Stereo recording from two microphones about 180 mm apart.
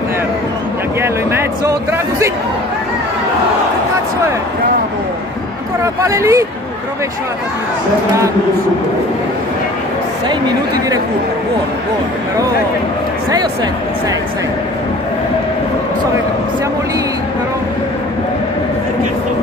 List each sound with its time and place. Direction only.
1.6 s speech: 15° right (ahead or behind)
5.9 s speech: 15° right (ahead or behind)